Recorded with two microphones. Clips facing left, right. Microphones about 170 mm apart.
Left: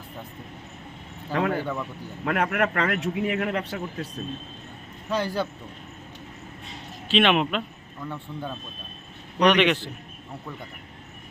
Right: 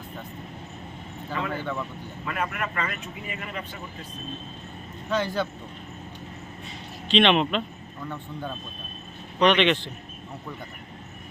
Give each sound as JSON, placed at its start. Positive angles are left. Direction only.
{"t": 1.3, "sound": "speech", "side_deg": 65}
{"t": 5.0, "sound": "a man's voice", "side_deg": 10}
{"t": 7.1, "sound": "a man's voice", "side_deg": 5}